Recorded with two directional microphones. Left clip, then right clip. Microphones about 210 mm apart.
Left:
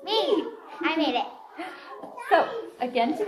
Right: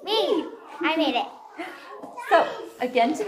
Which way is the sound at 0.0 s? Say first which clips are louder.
Right 2 dB; 20° right (ahead or behind).